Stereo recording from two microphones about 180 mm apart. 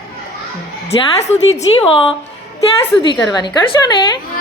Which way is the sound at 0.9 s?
40° left (ahead or behind).